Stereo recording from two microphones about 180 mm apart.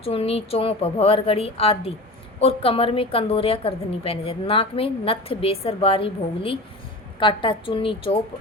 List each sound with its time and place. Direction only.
0.0 s a woman's voice: 35° left (ahead or behind)